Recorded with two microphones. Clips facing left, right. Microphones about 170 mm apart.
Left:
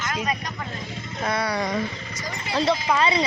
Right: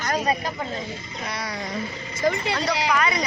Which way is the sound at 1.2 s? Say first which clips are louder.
Left 7 dB; 60° left (ahead or behind).